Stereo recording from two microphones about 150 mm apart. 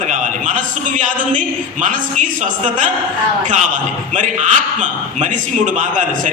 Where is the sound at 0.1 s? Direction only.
60° right (ahead or behind).